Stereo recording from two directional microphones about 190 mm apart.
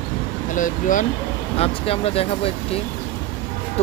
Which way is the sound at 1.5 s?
30° left (ahead or behind).